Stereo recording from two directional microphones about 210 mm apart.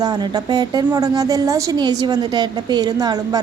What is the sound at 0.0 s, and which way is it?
A woman's voice, 20° right (ahead or behind).